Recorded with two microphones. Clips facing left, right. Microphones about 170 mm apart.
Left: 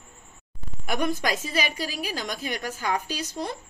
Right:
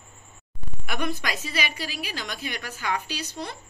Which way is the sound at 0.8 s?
45° left (ahead or behind).